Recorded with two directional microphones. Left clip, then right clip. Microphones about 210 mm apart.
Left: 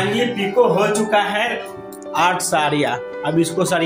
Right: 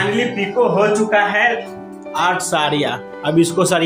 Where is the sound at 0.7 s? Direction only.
5° left (ahead or behind).